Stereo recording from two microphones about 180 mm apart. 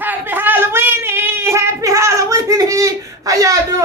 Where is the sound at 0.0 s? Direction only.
10° right (ahead or behind).